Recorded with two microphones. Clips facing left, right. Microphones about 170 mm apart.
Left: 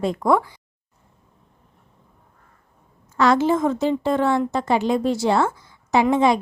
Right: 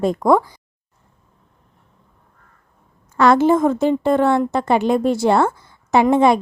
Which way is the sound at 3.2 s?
55° right (ahead or behind).